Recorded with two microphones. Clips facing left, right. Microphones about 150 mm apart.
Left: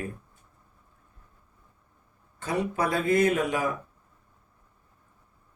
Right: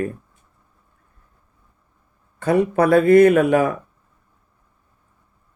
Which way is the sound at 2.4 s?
60° right (ahead or behind).